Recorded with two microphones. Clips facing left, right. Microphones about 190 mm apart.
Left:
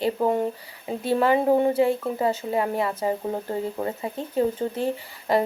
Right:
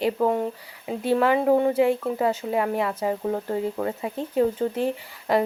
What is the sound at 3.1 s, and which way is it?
Speech, 15° left (ahead or behind).